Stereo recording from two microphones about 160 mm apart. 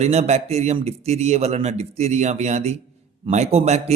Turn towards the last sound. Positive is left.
turn(degrees=-40)  # may be behind; listen again after turning